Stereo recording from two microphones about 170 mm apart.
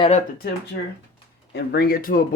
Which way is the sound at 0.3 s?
65° left (ahead or behind).